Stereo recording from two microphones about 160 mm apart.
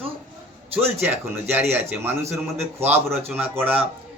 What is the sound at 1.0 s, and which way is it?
A man's voice, 10° right (ahead or behind).